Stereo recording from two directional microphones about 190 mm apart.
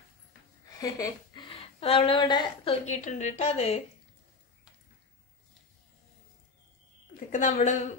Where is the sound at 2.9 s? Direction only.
40° left (ahead or behind).